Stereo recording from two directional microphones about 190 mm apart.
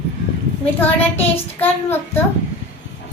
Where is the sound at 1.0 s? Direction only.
10° left (ahead or behind).